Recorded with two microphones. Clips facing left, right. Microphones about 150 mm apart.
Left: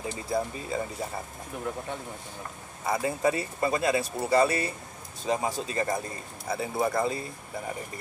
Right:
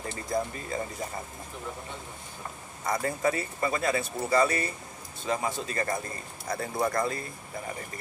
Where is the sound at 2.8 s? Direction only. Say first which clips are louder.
Left 1 dB; 5° left (ahead or behind).